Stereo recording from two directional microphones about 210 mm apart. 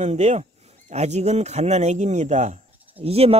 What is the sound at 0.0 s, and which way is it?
Speech, 30° right (ahead or behind).